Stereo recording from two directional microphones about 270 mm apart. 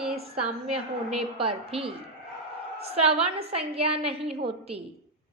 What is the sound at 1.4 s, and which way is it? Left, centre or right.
Speech, right.